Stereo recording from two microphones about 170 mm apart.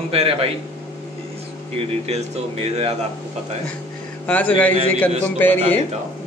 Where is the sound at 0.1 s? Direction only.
35° right (ahead or behind).